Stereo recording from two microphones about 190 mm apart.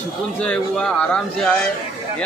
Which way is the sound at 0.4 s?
5° left (ahead or behind).